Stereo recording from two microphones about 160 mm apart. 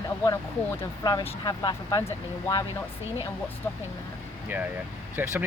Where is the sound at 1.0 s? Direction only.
25° left (ahead or behind).